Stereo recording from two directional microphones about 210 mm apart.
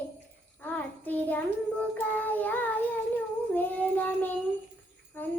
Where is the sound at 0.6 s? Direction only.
10° left (ahead or behind).